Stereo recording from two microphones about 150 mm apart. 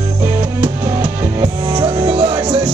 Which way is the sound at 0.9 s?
15° right (ahead or behind).